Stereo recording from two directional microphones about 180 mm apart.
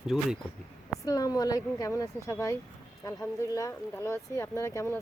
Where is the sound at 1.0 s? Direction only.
20° left (ahead or behind).